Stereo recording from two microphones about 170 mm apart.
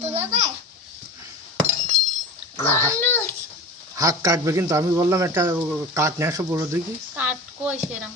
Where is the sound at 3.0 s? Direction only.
10° left (ahead or behind).